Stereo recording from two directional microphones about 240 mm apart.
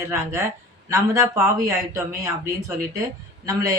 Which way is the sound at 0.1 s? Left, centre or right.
Centre.